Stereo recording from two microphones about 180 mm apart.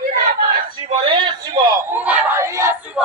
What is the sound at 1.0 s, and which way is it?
Speech, 30° right (ahead or behind).